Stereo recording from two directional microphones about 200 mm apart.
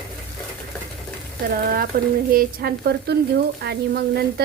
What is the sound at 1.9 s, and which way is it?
Speech, 45° right (ahead or behind).